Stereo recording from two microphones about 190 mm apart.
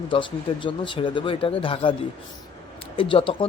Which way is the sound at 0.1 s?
25° left (ahead or behind).